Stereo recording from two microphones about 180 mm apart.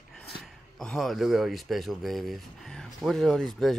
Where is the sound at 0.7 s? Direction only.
Centre (ahead or behind).